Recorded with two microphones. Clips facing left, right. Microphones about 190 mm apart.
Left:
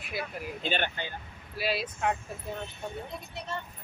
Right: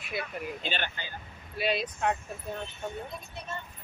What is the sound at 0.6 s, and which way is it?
Speech, 50° left (ahead or behind).